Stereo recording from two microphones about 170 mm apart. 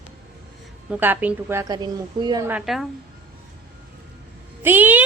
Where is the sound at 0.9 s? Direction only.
10° right (ahead or behind).